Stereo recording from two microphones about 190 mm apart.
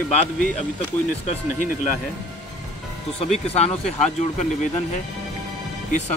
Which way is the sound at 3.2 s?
35° left (ahead or behind).